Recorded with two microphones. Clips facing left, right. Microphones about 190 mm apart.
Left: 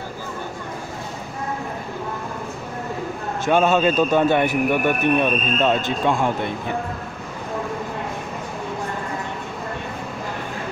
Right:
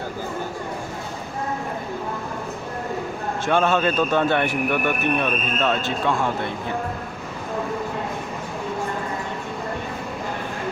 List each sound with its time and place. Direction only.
3.4 s a man's voice: 15° left (ahead or behind)